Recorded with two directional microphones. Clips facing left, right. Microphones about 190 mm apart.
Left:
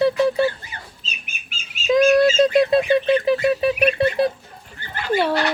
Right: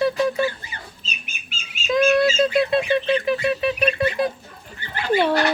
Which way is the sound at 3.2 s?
35° left (ahead or behind).